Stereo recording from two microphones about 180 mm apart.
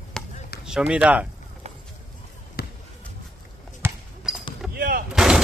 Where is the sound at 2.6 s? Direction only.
60° left (ahead or behind).